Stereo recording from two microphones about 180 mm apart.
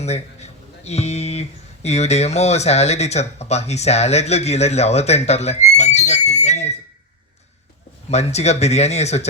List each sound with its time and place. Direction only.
0.0 s speech: 35° left (ahead or behind)
8.1 s speech: 35° left (ahead or behind)